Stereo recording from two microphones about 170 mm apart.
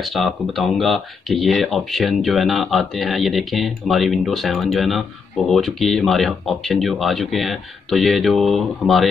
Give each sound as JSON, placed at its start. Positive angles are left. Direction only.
{"t": 0.1, "sound": "speech", "side_deg": 0}